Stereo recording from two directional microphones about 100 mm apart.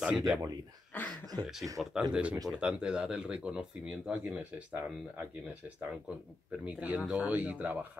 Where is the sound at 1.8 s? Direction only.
5° right (ahead or behind).